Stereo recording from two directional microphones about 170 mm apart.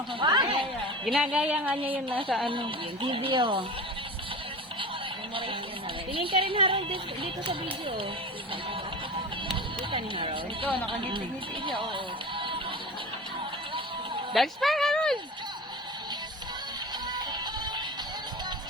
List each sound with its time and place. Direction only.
0.2 s a sound: 30° right (ahead or behind)
1.0 s speech: 5° right (ahead or behind)
2.0 s speech: 30° right (ahead or behind)
6.1 s speech: 30° right (ahead or behind)
9.9 s speech: 30° right (ahead or behind)
14.3 s speech: centre (ahead or behind)